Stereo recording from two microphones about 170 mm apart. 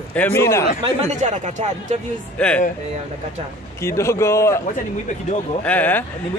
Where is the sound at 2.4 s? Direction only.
5° left (ahead or behind).